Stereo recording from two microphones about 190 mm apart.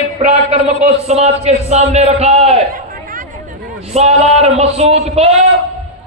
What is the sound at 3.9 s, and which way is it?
Speech, 35° right (ahead or behind).